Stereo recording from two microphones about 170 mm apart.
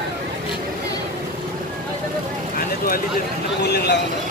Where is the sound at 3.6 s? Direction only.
75° left (ahead or behind).